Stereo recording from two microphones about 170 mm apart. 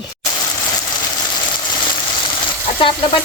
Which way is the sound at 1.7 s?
25° left (ahead or behind).